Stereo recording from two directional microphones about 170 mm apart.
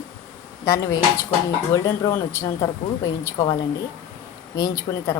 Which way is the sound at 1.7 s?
20° left (ahead or behind).